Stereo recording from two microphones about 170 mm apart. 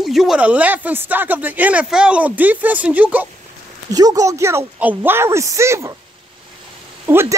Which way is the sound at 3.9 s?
20° right (ahead or behind).